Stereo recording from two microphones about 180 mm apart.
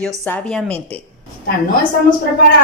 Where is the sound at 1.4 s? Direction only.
50° left (ahead or behind).